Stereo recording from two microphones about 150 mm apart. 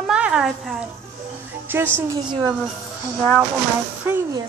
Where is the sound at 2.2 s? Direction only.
30° right (ahead or behind).